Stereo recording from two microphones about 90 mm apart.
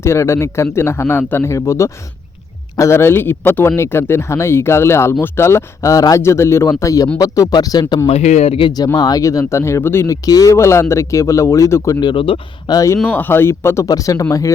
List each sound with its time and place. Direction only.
0.0 s a man's voice: 30° left (ahead or behind)
10.2 s speech: 40° left (ahead or behind)
11.9 s speech: 60° left (ahead or behind)
12.6 s speech: 40° left (ahead or behind)
13.0 s a man's voice: 15° left (ahead or behind)
13.8 s speech: 40° left (ahead or behind)